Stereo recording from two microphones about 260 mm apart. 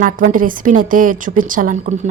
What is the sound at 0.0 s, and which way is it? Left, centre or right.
A woman's voice, right.